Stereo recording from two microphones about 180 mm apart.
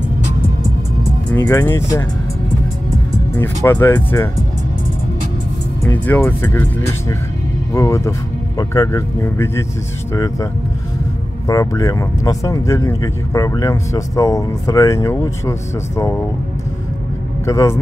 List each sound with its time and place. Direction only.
1.3 s speech: 15° left (ahead or behind)
3.3 s speech: 15° left (ahead or behind)
5.9 s speech: 10° left (ahead or behind)
7.7 s speech: 15° left (ahead or behind)
17.5 s speech: 15° left (ahead or behind)